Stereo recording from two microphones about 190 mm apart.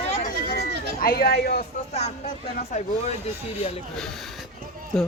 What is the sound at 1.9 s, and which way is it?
Speech, 35° left (ahead or behind).